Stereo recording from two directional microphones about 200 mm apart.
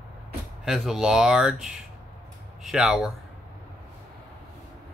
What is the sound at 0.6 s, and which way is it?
Speech, centre (ahead or behind).